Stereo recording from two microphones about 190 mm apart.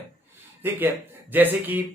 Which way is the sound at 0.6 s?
10° right (ahead or behind).